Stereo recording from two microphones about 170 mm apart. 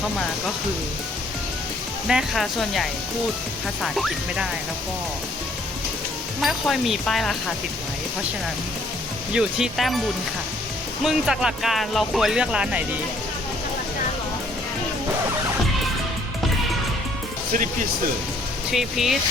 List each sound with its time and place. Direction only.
2.0 s speech: centre (ahead or behind)
6.4 s speech: centre (ahead or behind)
9.3 s speech: 5° right (ahead or behind)
11.0 s speech: 5° right (ahead or behind)
18.7 s speech: centre (ahead or behind)